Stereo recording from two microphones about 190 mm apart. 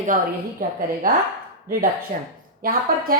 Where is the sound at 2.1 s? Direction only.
45° right (ahead or behind).